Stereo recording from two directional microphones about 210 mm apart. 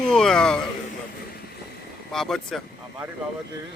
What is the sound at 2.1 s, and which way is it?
Speech, centre (ahead or behind).